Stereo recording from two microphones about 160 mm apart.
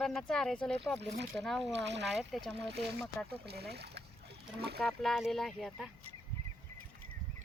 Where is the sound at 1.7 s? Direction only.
90° right.